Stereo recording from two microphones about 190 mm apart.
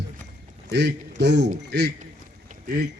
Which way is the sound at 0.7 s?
65° right (ahead or behind).